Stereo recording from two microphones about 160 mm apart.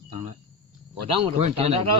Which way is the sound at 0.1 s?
40° right (ahead or behind).